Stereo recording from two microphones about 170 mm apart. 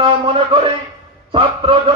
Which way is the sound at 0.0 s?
30° right (ahead or behind).